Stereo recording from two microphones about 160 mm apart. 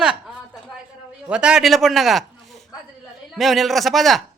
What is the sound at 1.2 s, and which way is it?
A man's voice, 5° right (ahead or behind).